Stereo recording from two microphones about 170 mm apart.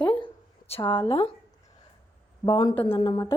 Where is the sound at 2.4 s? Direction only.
25° left (ahead or behind).